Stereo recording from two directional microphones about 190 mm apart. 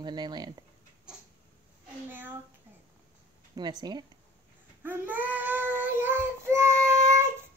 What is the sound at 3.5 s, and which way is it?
Speech, 20° right (ahead or behind).